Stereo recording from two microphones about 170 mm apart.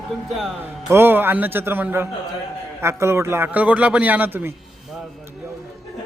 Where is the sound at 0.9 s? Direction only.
15° right (ahead or behind).